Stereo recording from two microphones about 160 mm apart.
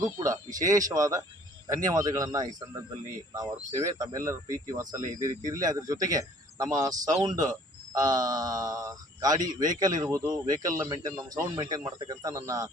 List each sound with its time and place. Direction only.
0.0 s speech: 20° right (ahead or behind)
3.9 s speech: 20° right (ahead or behind)